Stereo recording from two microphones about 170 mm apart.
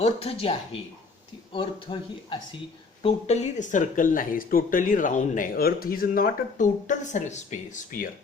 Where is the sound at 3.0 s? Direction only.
40° left (ahead or behind).